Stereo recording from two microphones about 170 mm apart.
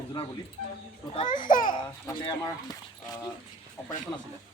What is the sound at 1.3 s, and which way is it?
Speech, 50° left (ahead or behind).